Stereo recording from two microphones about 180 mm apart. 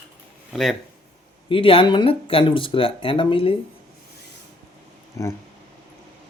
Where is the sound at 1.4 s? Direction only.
30° left (ahead or behind).